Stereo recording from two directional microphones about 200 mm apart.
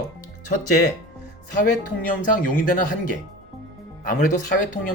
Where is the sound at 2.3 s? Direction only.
40° left (ahead or behind).